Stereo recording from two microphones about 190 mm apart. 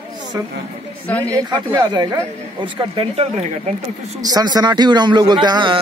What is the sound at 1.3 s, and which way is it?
A man's voice, 20° right (ahead or behind).